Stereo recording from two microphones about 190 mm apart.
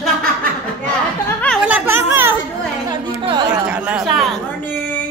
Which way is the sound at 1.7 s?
10° right (ahead or behind).